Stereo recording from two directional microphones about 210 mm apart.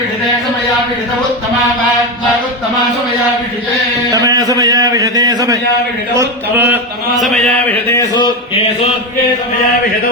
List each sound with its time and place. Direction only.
4.1 s a man's voice: 15° right (ahead or behind)
7.7 s speech: 10° left (ahead or behind)